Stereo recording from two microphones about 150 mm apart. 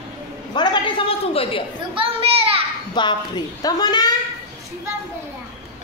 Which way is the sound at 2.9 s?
30° left (ahead or behind).